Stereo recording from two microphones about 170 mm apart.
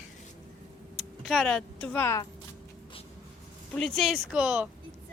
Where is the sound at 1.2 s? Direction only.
Centre (ahead or behind).